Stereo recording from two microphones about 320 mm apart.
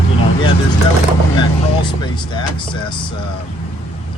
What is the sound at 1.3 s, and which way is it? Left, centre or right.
Speech, centre.